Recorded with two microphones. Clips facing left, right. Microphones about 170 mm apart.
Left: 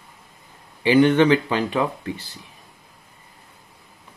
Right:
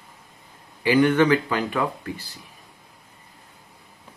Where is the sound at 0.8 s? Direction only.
25° left (ahead or behind).